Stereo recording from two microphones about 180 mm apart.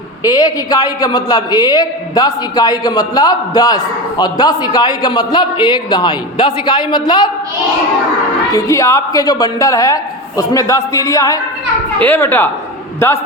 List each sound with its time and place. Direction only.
0.2 s a man's voice: 20° left (ahead or behind)
8.5 s a woman's voice: 15° left (ahead or behind)